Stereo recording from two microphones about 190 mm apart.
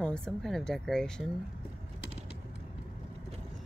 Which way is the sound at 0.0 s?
5° left (ahead or behind).